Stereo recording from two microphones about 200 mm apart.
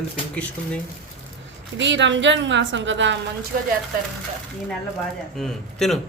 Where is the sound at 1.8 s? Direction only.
65° right (ahead or behind).